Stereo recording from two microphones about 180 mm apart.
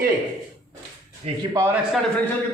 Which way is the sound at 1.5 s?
15° right (ahead or behind).